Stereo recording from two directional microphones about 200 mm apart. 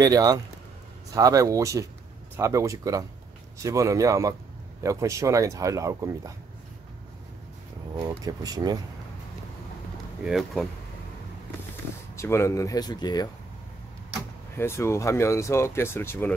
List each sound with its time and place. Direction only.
0.0 s speech: 20° right (ahead or behind)
8.1 s speech: 15° right (ahead or behind)
10.2 s speech: centre (ahead or behind)
12.2 s speech: 15° left (ahead or behind)
14.6 s speech: 15° left (ahead or behind)